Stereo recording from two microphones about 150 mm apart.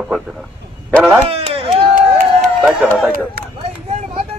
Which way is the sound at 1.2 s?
40° right (ahead or behind).